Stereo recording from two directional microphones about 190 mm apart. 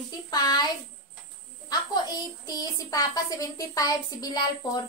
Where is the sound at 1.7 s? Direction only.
20° left (ahead or behind).